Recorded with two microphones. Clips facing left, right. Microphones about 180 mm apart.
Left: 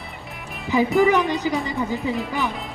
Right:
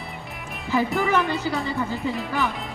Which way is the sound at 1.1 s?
15° left (ahead or behind).